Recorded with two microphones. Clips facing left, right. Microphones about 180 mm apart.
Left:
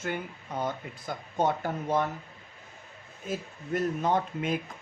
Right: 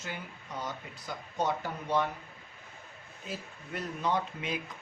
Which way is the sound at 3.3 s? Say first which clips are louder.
Left 8 dB; 45° left (ahead or behind).